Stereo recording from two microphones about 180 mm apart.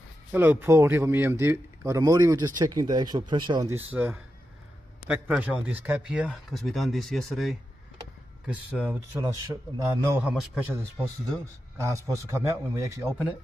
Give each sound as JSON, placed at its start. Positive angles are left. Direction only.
{"t": 0.3, "sound": "a man's voice", "side_deg": -10}
{"t": 3.9, "sound": "a man's voice", "side_deg": -10}